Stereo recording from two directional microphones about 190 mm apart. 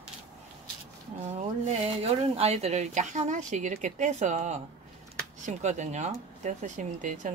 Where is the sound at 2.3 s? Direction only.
35° right (ahead or behind).